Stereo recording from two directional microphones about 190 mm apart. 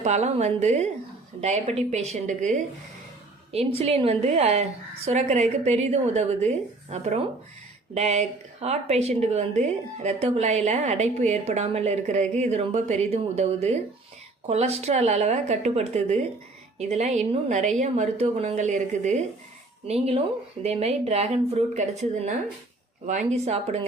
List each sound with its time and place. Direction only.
0.0 s a woman's voice: 35° right (ahead or behind)